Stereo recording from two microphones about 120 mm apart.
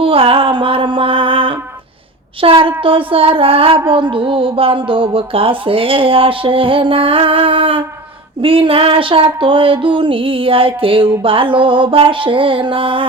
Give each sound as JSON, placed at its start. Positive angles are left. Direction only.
{"t": 0.0, "sound": "music", "side_deg": -50}
{"t": 2.4, "sound": "speech", "side_deg": -45}